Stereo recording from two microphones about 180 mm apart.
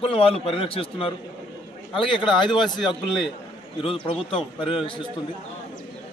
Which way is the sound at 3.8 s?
30° left (ahead or behind).